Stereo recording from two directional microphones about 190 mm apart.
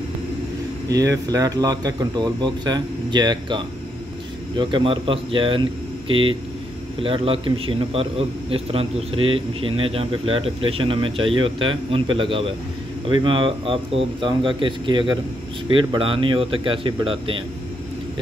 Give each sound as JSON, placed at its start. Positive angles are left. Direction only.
{"t": 0.8, "sound": "a man's voice", "side_deg": -15}